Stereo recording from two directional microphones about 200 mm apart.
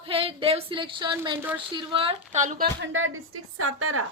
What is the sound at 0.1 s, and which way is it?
A woman's voice, 25° right (ahead or behind).